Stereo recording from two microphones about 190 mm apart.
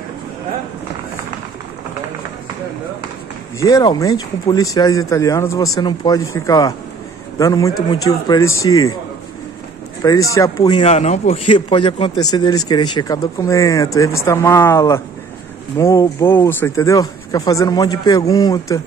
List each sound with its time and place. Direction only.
3.5 s speech: 20° left (ahead or behind)
10.0 s a man's voice: 15° left (ahead or behind)